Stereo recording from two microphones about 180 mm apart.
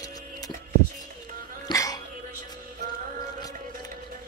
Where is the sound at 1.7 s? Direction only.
20° left (ahead or behind).